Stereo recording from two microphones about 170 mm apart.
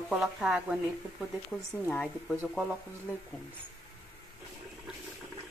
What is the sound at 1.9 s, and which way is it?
Speech, 5° left (ahead or behind).